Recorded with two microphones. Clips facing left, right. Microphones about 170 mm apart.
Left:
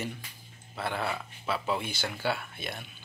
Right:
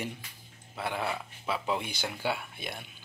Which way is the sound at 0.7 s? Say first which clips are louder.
Left 1 dB; 15° right (ahead or behind).